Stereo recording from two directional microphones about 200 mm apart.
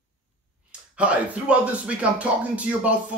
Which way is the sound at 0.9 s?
5° right (ahead or behind).